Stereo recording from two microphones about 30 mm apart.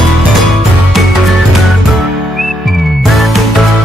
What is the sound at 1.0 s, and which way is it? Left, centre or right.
Music, centre.